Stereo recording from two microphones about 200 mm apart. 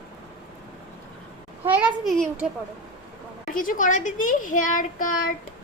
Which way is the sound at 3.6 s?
40° left (ahead or behind).